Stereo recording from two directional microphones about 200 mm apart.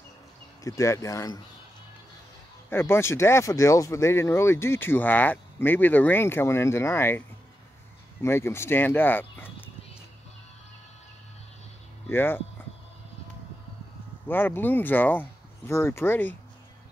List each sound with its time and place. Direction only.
0.7 s speech: 15° left (ahead or behind)
2.7 s speech: 10° left (ahead or behind)
12.1 s speech: 10° left (ahead or behind)
14.2 s speech: 10° left (ahead or behind)